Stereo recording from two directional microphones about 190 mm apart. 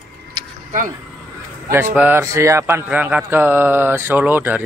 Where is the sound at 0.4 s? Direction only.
25° right (ahead or behind).